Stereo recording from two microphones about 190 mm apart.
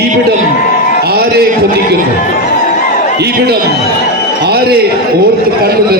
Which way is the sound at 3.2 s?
55° right (ahead or behind).